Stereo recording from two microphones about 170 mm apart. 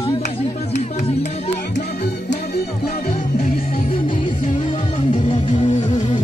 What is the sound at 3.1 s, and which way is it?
Music, 40° left (ahead or behind).